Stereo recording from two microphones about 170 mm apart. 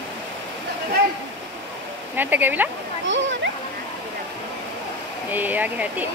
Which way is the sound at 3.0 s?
90° right.